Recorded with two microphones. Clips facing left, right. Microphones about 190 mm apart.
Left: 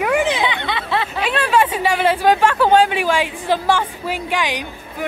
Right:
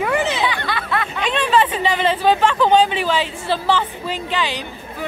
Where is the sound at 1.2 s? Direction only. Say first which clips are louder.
Even; 10° left (ahead or behind).